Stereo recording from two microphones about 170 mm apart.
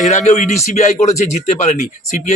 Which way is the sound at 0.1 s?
40° left (ahead or behind).